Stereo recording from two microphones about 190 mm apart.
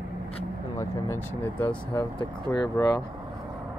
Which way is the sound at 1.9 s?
20° left (ahead or behind).